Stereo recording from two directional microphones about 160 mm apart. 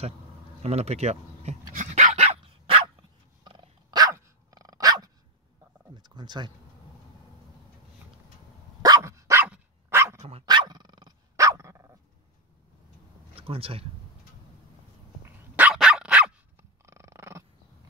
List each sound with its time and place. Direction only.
0.6 s dog: 40° right (ahead or behind); by 5.1 s 25° right (ahead or behind)
5.9 s a sound: 25° right (ahead or behind)
8.8 s dog: 20° right (ahead or behind)
10.4 s dog: 25° right (ahead or behind)
13.3 s speech: 35° right (ahead or behind)
15.5 s dog: 5° right (ahead or behind)
16.8 s purr: 15° right (ahead or behind)